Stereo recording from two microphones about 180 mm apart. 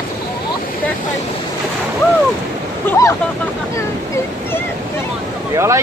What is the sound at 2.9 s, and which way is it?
Speech, 15° left (ahead or behind).